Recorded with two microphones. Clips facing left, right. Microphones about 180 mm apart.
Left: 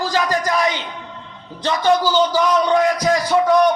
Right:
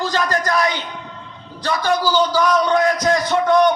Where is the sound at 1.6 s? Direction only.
20° left (ahead or behind).